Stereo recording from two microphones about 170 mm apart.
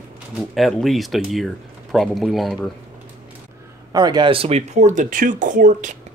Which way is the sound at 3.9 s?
25° right (ahead or behind).